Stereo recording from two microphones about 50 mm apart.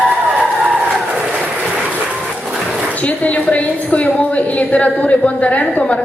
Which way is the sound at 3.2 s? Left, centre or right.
Left.